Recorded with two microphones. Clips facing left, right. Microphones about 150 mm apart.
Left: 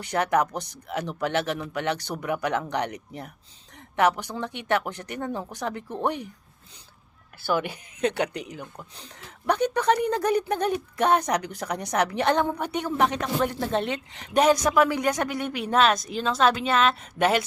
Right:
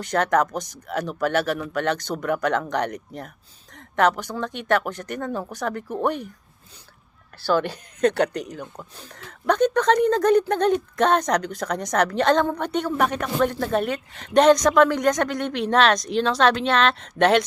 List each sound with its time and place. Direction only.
0.0 s a woman's voice: 15° left (ahead or behind)
8.0 s speech: 60° right (ahead or behind)
8.4 s a woman's voice: 10° left (ahead or behind)
14.3 s a woman's voice: 10° left (ahead or behind)